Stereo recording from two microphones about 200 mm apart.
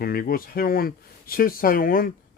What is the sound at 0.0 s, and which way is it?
Speech, 50° left (ahead or behind).